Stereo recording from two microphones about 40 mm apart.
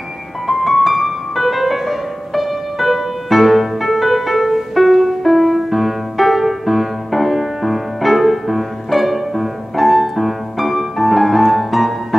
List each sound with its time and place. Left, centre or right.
0.5 s music: centre